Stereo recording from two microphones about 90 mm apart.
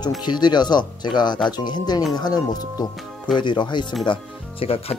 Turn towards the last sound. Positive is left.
turn(degrees=90)